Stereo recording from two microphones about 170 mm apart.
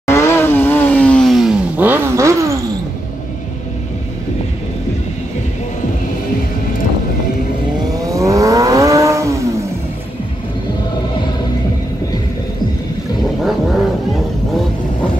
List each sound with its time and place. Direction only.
0.0 s vehicle: 15° left (ahead or behind); by 2.3 s 15° right (ahead or behind)
8.1 s vehicle: 20° right (ahead or behind)
13.4 s vehicle: centre (ahead or behind)